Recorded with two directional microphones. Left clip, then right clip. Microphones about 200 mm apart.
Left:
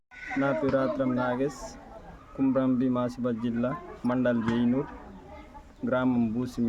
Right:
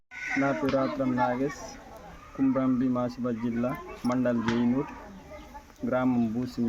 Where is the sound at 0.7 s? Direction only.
10° left (ahead or behind).